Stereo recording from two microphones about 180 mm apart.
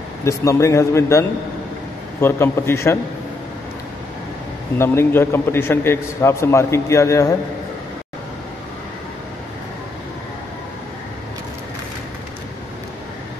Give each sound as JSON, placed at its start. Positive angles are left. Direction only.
{"t": 0.2, "sound": "a man's voice", "side_deg": 15}
{"t": 4.7, "sound": "a man's voice", "side_deg": 15}